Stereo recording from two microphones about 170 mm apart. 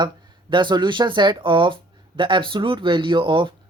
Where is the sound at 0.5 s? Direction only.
25° right (ahead or behind).